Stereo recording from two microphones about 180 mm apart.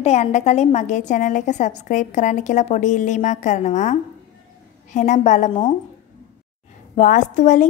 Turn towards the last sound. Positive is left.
turn(degrees=45)  # may be behind; listen again after turning